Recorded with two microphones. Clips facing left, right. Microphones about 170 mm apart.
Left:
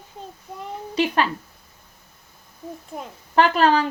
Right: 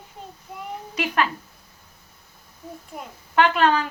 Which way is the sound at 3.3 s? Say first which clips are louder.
Left 2 dB; 35° left (ahead or behind).